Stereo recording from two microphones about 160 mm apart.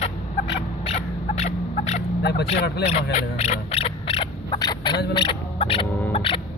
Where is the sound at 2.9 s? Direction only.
40° left (ahead or behind); by 5.0 s 25° left (ahead or behind).